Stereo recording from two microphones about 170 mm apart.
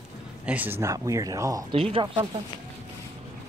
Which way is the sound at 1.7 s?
30° right (ahead or behind).